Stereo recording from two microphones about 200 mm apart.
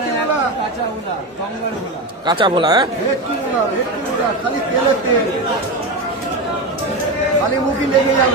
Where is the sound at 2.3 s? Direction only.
25° right (ahead or behind).